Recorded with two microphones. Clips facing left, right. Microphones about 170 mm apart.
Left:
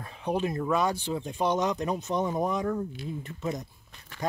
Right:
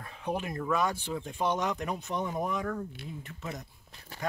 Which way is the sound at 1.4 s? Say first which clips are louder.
Left 4 dB; 35° left (ahead or behind).